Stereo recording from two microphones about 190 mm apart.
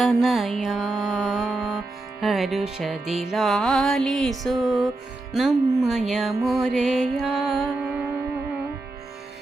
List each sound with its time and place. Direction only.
0.0 s music: centre (ahead or behind)